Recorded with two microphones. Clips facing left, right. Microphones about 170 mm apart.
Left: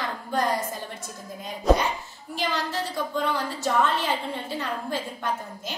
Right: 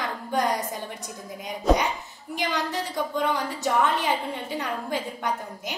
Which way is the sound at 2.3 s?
15° right (ahead or behind).